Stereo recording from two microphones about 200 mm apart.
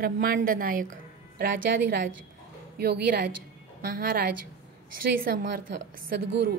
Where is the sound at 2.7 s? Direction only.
50° right (ahead or behind).